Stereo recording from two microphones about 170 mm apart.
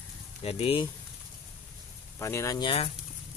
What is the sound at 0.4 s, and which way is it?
Speech, 35° left (ahead or behind).